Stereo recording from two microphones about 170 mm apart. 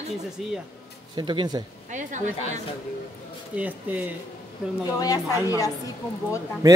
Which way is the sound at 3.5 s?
10° right (ahead or behind).